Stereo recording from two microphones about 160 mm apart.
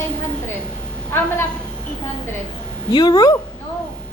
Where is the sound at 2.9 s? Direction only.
25° left (ahead or behind).